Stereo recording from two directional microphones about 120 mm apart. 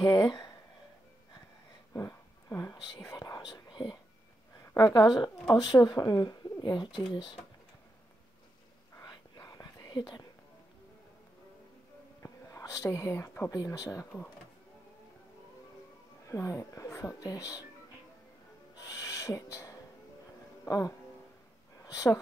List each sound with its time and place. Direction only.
0.0 s speech: 30° left (ahead or behind)
2.0 s whispering: 25° left (ahead or behind)
4.7 s speech: 35° left (ahead or behind)
9.0 s whispering: 30° left (ahead or behind)
12.2 s whispering: 25° left (ahead or behind)
13.6 s speech: 25° left (ahead or behind)
16.3 s speech: 25° left (ahead or behind)
18.8 s owl: 25° left (ahead or behind)
20.6 s speech: 30° left (ahead or behind)